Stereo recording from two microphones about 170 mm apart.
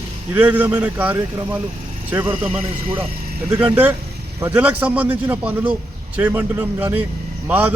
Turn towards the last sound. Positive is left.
turn(degrees=-10)  # may be behind; listen again after turning